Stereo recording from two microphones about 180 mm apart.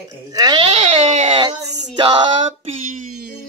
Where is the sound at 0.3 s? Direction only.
20° right (ahead or behind).